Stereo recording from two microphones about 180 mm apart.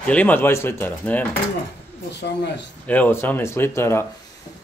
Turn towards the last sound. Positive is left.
turn(degrees=15)  # may be behind; listen again after turning